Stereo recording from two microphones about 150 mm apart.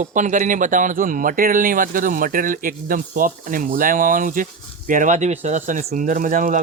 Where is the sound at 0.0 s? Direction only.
55° right (ahead or behind).